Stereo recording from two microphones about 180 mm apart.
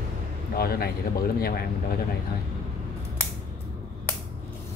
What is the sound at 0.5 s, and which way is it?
Speech, 55° left (ahead or behind).